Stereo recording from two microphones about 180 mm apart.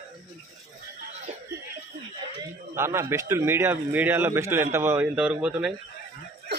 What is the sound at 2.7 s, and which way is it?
A man's voice, 15° right (ahead or behind).